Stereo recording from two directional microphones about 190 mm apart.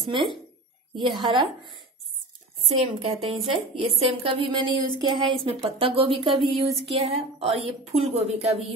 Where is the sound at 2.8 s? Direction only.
30° right (ahead or behind).